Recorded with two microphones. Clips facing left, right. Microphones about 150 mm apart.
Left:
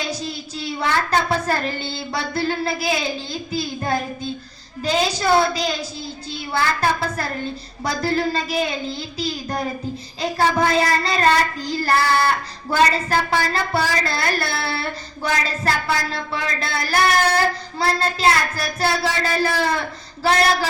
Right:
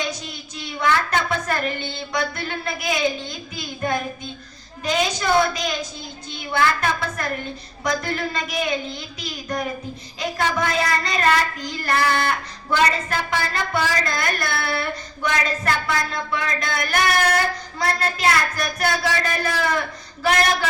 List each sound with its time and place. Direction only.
0.1 s child singing: 35° left (ahead or behind)
3.5 s a woman's voice: 35° left (ahead or behind)